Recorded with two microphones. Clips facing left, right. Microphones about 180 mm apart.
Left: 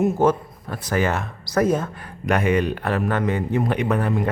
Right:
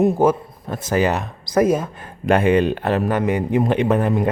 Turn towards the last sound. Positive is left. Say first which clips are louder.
# right 4 dB
turn(degrees=-25)  # may be behind; listen again after turning